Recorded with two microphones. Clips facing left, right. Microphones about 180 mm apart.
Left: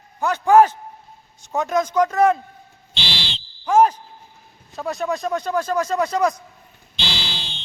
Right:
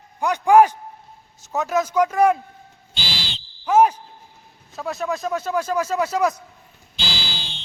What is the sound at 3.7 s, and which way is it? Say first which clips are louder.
A man's voice: even; 10° right (ahead or behind).